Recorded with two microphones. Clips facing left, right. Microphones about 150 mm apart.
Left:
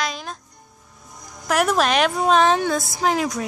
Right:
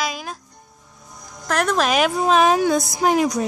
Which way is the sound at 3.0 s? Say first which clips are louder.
Right 2 dB; 15° right (ahead or behind).